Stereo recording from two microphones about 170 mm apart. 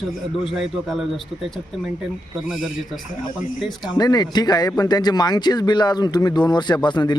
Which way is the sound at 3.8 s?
25° left (ahead or behind).